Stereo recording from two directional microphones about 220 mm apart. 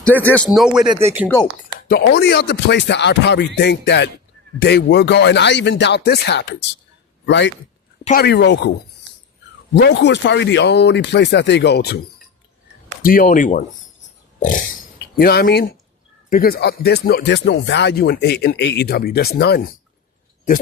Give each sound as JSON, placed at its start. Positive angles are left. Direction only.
{"t": 0.0, "sound": "speech", "side_deg": 10}
{"t": 0.9, "sound": "speech", "side_deg": -25}
{"t": 1.9, "sound": "speech", "side_deg": 50}
{"t": 9.7, "sound": "speech", "side_deg": 50}
{"t": 14.3, "sound": "a sound", "side_deg": 35}
{"t": 14.9, "sound": "speech", "side_deg": 45}